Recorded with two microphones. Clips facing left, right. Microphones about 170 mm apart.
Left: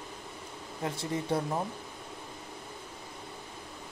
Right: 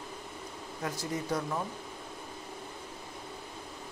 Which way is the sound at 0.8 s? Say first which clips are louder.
Left 2 dB; 25° left (ahead or behind).